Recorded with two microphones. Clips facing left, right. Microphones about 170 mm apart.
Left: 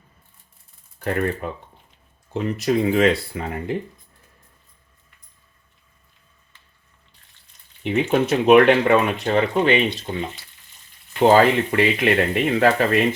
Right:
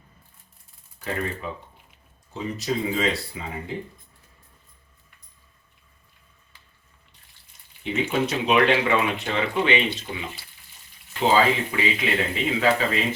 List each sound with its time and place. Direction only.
0.9 s speech: 55° left (ahead or behind)
8.1 s speech: 55° left (ahead or behind)
11.2 s speech: 55° left (ahead or behind)